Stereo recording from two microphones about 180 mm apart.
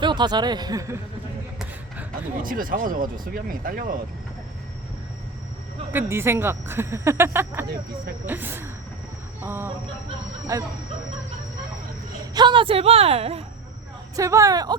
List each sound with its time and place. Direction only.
0.0 s speech: 25° right (ahead or behind)
2.4 s speech: 50° right (ahead or behind)
5.9 s speech: 10° right (ahead or behind)
12.3 s speech: 25° right (ahead or behind)
14.2 s speech: 15° right (ahead or behind)